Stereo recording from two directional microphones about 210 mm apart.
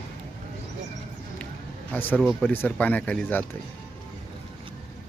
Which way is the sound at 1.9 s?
10° left (ahead or behind).